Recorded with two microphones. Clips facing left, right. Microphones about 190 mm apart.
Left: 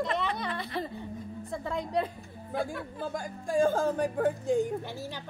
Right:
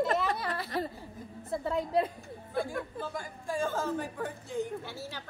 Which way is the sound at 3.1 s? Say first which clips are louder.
Left 8 dB; 45° left (ahead or behind).